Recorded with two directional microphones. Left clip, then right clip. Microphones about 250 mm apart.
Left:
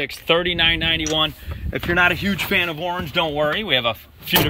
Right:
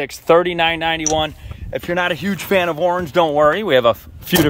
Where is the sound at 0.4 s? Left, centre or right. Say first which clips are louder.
Right 2 dB; centre.